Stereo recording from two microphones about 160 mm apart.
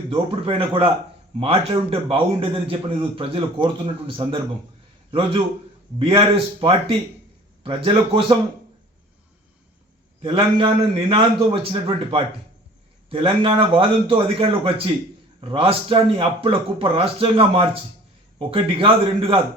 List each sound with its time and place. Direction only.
0.1 s a man's voice: 35° right (ahead or behind)
6.0 s a man's voice: 35° right (ahead or behind)
10.2 s a man's voice: 35° right (ahead or behind)